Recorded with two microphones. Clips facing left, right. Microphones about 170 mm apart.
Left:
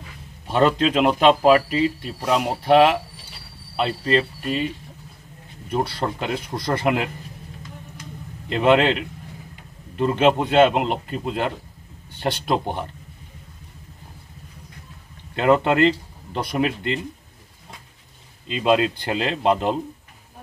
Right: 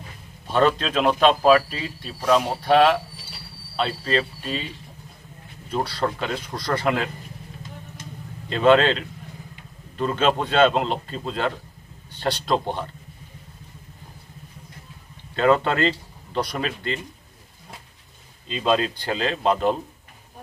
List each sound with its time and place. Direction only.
0.5 s speech: 15° left (ahead or behind)
5.7 s speech: 15° left (ahead or behind)
8.5 s speech: 15° left (ahead or behind)
15.3 s speech: 15° left (ahead or behind)
18.5 s speech: 10° left (ahead or behind)